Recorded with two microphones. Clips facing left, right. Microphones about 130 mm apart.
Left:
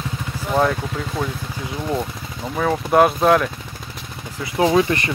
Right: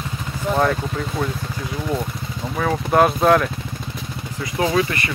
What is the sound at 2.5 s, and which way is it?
Speech, 5° left (ahead or behind).